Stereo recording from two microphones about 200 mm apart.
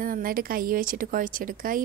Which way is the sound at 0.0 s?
45° right (ahead or behind).